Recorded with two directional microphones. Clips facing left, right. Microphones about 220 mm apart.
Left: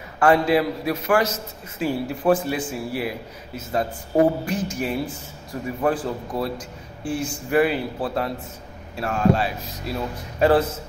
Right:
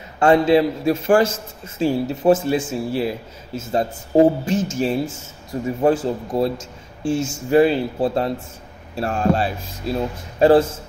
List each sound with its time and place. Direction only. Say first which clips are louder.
0.2 s speech: right 4 dB; 25° right (ahead or behind)